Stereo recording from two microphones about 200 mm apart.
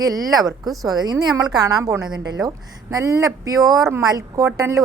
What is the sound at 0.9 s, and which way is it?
A woman's voice, 20° right (ahead or behind).